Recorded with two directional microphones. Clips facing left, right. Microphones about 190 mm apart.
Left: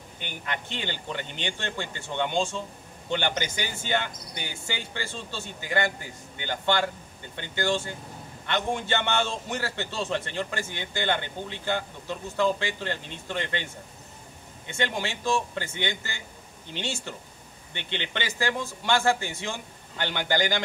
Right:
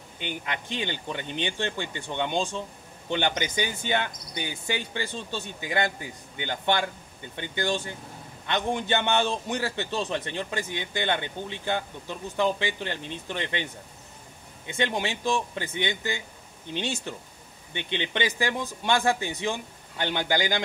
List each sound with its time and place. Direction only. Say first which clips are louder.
0.2 s a man's voice: right 2 dB; 15° right (ahead or behind)
14.7 s a man's voice: right 2 dB; 20° right (ahead or behind)